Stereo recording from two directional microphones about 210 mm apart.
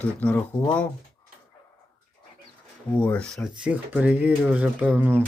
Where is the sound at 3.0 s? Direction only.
5° left (ahead or behind); by 5.3 s 10° right (ahead or behind).